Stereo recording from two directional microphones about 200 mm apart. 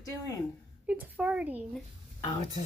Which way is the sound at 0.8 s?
5° right (ahead or behind).